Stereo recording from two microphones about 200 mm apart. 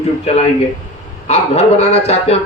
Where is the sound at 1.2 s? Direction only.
30° left (ahead or behind).